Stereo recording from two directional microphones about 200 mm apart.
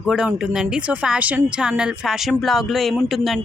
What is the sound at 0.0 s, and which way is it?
A woman's voice, centre (ahead or behind).